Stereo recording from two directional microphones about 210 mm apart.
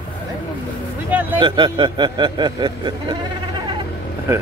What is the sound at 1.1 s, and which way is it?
Speech, 10° right (ahead or behind).